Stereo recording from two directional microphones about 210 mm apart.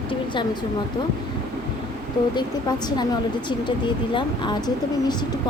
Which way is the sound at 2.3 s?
20° left (ahead or behind).